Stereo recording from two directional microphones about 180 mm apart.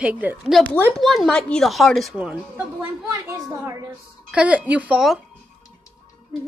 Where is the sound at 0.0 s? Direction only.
10° right (ahead or behind).